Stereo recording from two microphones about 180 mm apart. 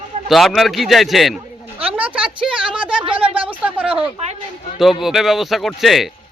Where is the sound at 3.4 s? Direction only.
10° right (ahead or behind).